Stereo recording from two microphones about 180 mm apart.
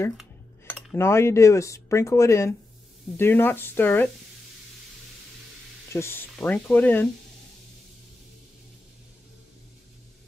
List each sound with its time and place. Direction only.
0.9 s speech: 15° left (ahead or behind)
5.9 s speech: 10° left (ahead or behind)